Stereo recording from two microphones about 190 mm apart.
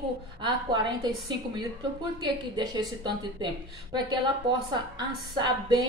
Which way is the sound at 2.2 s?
20° right (ahead or behind).